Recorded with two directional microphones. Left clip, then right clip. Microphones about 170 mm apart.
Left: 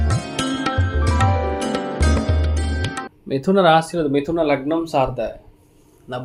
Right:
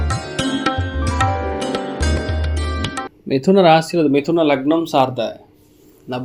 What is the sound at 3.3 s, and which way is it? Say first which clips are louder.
Speech: right 3 dB; 20° right (ahead or behind).